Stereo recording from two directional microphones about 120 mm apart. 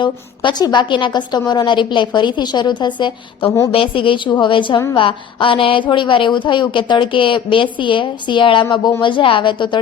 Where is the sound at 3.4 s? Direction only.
20° left (ahead or behind).